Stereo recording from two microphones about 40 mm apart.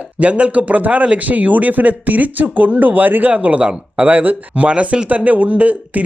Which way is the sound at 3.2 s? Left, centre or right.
Right.